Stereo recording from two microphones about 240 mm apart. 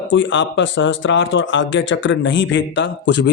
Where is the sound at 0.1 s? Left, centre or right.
Left.